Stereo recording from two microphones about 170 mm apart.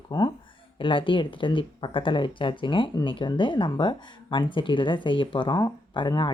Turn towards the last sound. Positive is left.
turn(degrees=30)  # may be behind; listen again after turning